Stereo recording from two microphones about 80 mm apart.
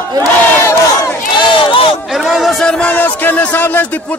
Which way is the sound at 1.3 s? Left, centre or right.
Left.